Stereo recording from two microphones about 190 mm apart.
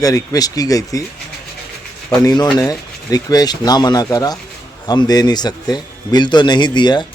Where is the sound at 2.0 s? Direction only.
20° left (ahead or behind).